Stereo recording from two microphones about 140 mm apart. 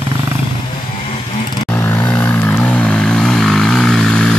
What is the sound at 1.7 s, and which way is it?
Vehicle, 15° left (ahead or behind).